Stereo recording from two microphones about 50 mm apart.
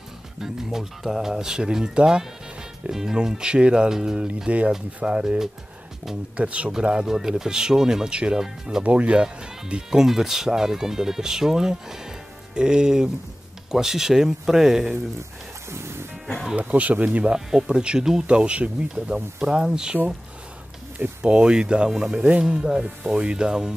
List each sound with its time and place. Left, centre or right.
0.4 s speech: centre
8.8 s speech: right; by 15.0 s centre
15.7 s music: right
16.5 s speech: right
17.5 s speech: centre
21.2 s speech: right